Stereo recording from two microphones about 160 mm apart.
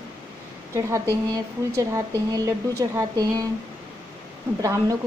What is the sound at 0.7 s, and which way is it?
A woman's voice, 15° right (ahead or behind).